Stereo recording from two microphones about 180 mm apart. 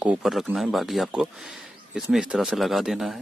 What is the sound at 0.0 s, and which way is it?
Speech, 5° right (ahead or behind).